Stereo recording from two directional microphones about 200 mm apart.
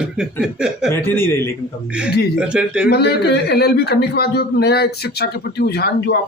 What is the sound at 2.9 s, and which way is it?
Speech, 55° left (ahead or behind).